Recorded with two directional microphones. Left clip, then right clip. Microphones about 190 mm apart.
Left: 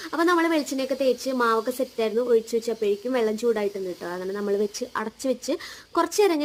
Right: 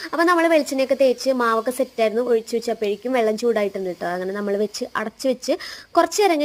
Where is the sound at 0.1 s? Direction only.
20° right (ahead or behind).